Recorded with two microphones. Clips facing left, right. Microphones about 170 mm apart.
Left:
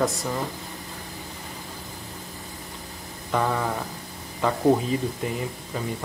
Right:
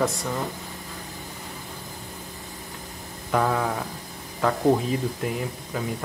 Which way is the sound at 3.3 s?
Centre (ahead or behind).